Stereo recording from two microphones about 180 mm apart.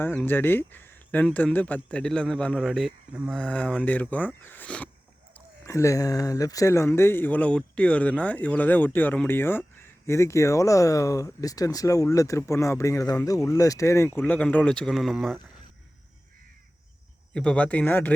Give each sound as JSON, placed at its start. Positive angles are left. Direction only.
{"t": 0.1, "sound": "speech", "side_deg": 5}
{"t": 17.3, "sound": "speech", "side_deg": 5}